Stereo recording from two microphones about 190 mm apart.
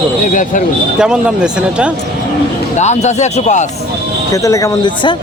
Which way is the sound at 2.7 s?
35° left (ahead or behind).